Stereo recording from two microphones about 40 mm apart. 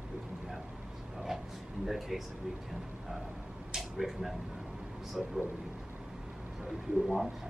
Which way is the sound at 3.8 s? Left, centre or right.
Centre.